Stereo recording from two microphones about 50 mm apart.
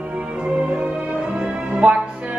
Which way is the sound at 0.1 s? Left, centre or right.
Right.